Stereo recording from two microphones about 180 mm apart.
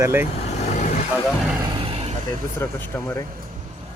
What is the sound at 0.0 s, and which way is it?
Speech, 15° right (ahead or behind).